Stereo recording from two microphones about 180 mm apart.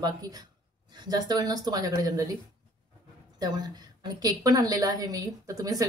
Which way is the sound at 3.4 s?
20° right (ahead or behind).